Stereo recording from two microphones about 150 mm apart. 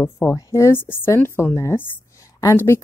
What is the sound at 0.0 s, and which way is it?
A woman's voice, 20° left (ahead or behind).